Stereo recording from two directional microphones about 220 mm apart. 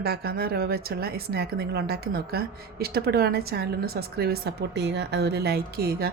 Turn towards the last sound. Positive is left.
turn(degrees=-45)  # may be behind; listen again after turning